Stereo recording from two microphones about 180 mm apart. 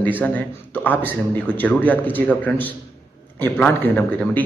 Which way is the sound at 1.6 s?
10° left (ahead or behind).